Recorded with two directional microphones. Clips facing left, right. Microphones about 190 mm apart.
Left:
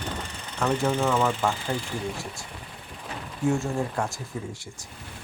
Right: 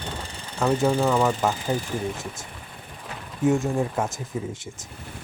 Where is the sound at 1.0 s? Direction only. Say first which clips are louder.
Right 2 dB; 10° right (ahead or behind).